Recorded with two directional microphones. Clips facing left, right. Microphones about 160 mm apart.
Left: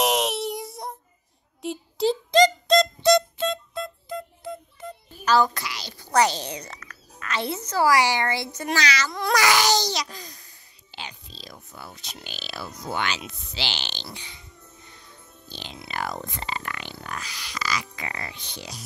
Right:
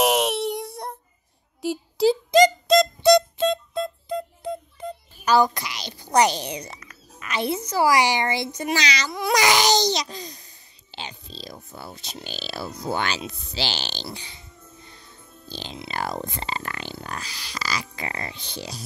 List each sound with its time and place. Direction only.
0.0 s child singing: centre (ahead or behind)
1.6 s music: 5° right (ahead or behind)
3.3 s music: 25° right (ahead or behind)
5.2 s a child's voice: 15° right (ahead or behind)
9.3 s babbling: 20° right (ahead or behind)